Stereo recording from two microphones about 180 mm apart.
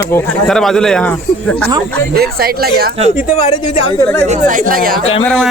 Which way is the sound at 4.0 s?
15° left (ahead or behind).